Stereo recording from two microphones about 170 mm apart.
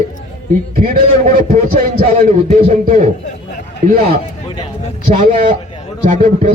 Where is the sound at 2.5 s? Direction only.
40° right (ahead or behind).